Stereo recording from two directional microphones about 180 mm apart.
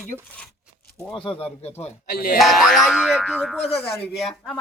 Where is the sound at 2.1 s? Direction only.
55° left (ahead or behind).